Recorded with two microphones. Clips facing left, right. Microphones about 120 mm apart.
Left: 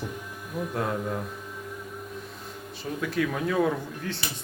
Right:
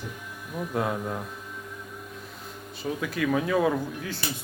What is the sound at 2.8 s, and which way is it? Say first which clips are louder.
Speech: left 1 dB; centre (ahead or behind).